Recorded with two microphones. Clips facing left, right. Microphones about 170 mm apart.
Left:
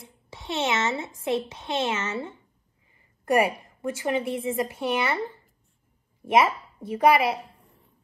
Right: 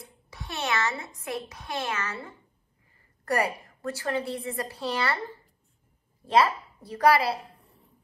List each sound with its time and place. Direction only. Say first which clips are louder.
0.0 s a woman's voice: left 2 dB; 25° left (ahead or behind)
6.2 s speech: left 1 dB; 20° left (ahead or behind)